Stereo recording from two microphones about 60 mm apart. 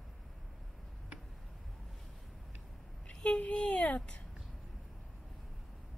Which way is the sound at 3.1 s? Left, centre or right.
Centre.